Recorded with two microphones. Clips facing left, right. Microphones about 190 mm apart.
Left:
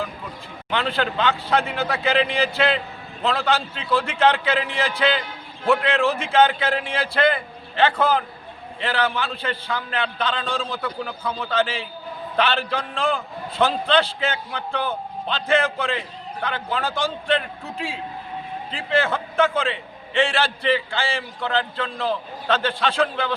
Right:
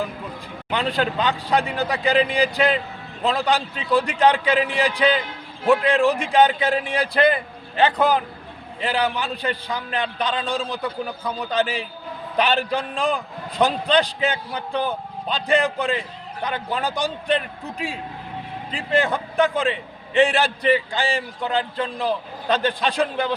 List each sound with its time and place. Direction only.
0.7 s a man's voice: 15° right (ahead or behind)